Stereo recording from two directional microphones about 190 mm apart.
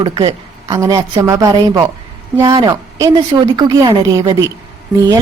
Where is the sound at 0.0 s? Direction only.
20° right (ahead or behind).